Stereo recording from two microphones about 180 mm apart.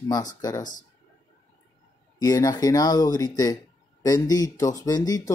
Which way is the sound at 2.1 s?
20° left (ahead or behind).